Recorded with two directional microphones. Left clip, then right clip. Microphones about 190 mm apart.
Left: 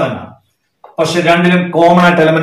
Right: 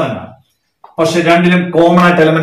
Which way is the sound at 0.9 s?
5° right (ahead or behind).